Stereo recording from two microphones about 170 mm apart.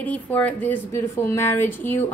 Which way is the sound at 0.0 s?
10° left (ahead or behind).